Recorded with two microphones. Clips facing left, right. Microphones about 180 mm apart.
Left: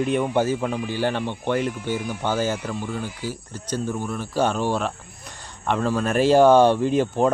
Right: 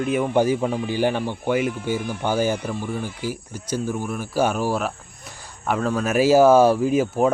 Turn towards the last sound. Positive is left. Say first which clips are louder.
# right 1 dB
turn(degrees=-5)  # may be behind; listen again after turning